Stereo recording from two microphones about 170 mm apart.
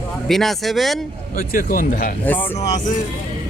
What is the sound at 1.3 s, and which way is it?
Speech, 55° left (ahead or behind).